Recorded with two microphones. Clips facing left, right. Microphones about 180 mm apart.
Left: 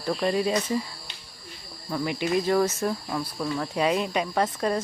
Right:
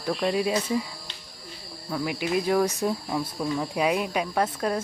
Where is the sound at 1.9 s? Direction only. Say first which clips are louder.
Left 1 dB; centre (ahead or behind).